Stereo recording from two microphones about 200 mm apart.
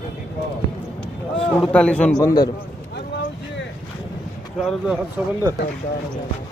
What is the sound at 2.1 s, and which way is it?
Speech, 20° left (ahead or behind).